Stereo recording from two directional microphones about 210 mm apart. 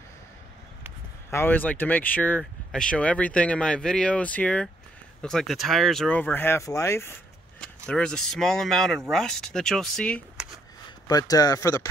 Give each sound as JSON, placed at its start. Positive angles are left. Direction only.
{"t": 1.3, "sound": "speech", "side_deg": 10}
{"t": 11.1, "sound": "speech", "side_deg": 15}